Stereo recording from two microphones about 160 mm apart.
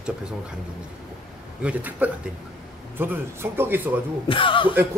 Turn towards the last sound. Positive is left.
turn(degrees=30)  # may be behind; listen again after turning